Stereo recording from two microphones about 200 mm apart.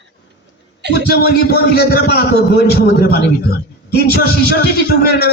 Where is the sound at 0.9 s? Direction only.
50° left (ahead or behind).